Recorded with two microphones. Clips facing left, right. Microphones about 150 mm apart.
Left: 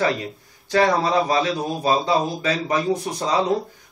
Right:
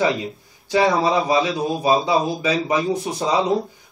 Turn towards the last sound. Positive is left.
turn(degrees=-15)  # may be behind; listen again after turning